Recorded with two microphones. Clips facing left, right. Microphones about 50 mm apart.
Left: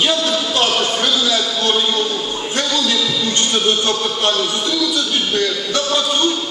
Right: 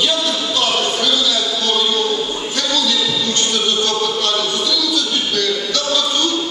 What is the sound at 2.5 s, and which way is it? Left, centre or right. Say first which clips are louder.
A man's voice: left 1 dB; left.